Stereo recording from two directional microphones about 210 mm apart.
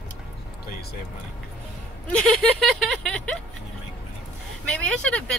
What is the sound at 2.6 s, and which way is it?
Speech, centre (ahead or behind).